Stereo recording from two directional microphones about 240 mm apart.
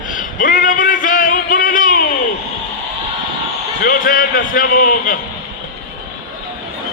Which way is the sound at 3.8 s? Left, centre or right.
Left.